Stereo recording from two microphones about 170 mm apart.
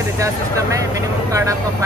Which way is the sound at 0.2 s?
20° right (ahead or behind).